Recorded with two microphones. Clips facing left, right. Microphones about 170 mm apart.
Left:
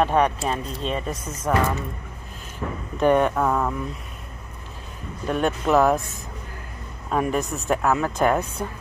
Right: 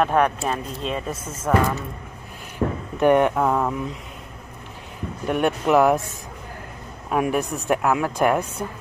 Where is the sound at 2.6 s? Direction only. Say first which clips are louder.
Right 7 dB; 50° right (ahead or behind).